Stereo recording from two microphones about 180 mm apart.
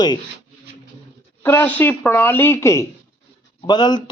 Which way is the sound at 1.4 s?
15° left (ahead or behind).